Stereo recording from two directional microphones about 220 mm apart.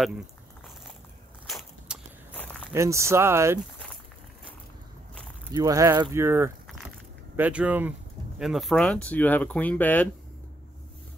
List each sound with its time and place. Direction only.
1.5 s a sound: 5° left (ahead or behind)
2.7 s speech: 15° right (ahead or behind)
5.5 s speech: 15° right (ahead or behind); by 10.0 s 10° left (ahead or behind)